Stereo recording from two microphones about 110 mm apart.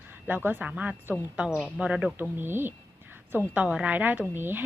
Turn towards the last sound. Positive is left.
turn(degrees=-20)  # may be behind; listen again after turning